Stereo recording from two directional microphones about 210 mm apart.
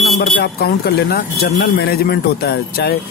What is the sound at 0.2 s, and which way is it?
Speech, 50° left (ahead or behind).